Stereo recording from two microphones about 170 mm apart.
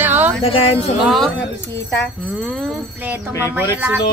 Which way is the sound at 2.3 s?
Centre (ahead or behind).